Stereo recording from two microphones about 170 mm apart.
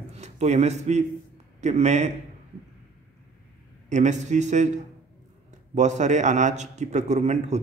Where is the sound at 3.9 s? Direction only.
45° right (ahead or behind).